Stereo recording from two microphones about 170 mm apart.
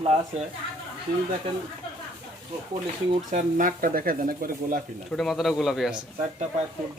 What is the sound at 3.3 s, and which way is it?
Speech, 50° right (ahead or behind).